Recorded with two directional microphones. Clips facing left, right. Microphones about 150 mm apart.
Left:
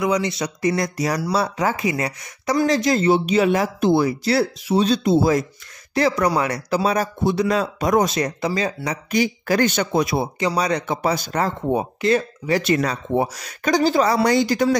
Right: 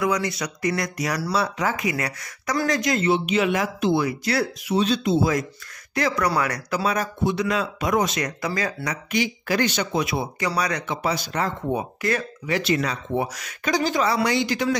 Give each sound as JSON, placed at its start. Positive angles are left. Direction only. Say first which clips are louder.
{"t": 0.0, "sound": "speech", "louder": "left 3 dB", "side_deg": 20}
{"t": 9.1, "sound": "speech", "louder": "left 4 dB", "side_deg": 40}
{"t": 10.9, "sound": "speech", "louder": "left 4 dB", "side_deg": 40}
{"t": 11.6, "sound": "speech", "louder": "left 5 dB", "side_deg": 25}
{"t": 12.6, "sound": "speech", "louder": "left 3 dB", "side_deg": 45}